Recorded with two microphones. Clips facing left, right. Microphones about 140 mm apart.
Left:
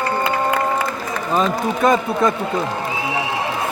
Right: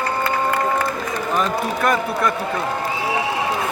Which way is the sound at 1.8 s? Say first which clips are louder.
Left 5 dB; 20° left (ahead or behind).